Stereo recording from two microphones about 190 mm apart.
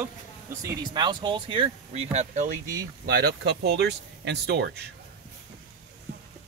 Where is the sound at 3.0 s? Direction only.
55° right (ahead or behind).